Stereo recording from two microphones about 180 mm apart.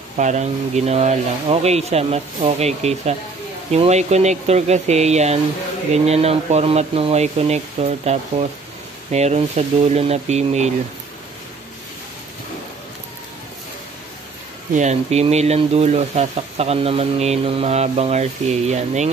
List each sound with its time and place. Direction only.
0.2 s speech: 40° right (ahead or behind)
14.7 s speech: 40° right (ahead or behind)